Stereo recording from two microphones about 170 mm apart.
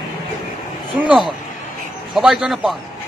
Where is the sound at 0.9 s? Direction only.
5° right (ahead or behind).